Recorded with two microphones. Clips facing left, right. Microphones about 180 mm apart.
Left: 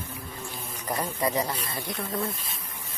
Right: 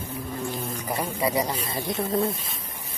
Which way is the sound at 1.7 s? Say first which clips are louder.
Right 6 dB; 25° right (ahead or behind).